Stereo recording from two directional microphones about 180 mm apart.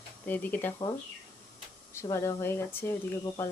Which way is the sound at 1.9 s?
15° left (ahead or behind).